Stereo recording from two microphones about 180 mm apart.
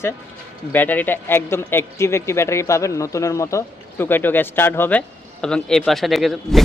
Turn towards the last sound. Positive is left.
turn(degrees=0)  # may be behind; listen again after turning